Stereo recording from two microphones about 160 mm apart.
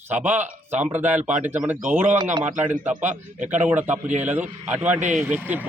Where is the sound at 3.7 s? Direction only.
10° right (ahead or behind).